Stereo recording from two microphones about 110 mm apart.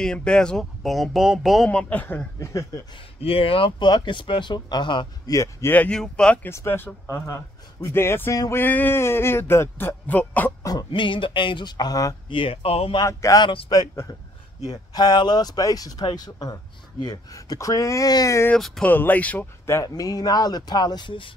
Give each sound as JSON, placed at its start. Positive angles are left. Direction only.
{"t": 0.0, "sound": "speech", "side_deg": 10}
{"t": 1.7, "sound": "speech", "side_deg": 10}
{"t": 2.4, "sound": "a sound", "side_deg": 30}
{"t": 3.2, "sound": "speech", "side_deg": 60}
{"t": 5.3, "sound": "speech", "side_deg": 30}
{"t": 5.7, "sound": "speech", "side_deg": 10}
{"t": 6.5, "sound": "a sound", "side_deg": 20}
{"t": 10.6, "sound": "speech", "side_deg": 35}
{"t": 10.9, "sound": "speech", "side_deg": 50}
{"t": 12.3, "sound": "speech", "side_deg": 55}
{"t": 13.0, "sound": "speech", "side_deg": 30}
{"t": 18.5, "sound": "speech", "side_deg": 10}